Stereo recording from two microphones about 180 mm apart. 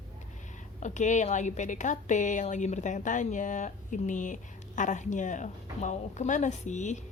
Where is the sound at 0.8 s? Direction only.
40° left (ahead or behind).